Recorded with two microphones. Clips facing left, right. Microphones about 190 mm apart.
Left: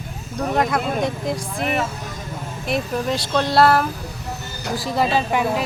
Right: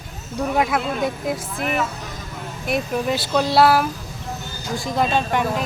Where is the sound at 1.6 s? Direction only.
35° left (ahead or behind).